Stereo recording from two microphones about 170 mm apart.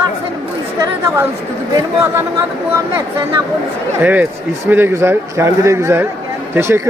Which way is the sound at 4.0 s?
10° right (ahead or behind).